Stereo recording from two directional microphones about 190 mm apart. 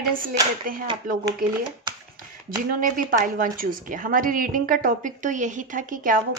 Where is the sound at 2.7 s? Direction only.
45° right (ahead or behind).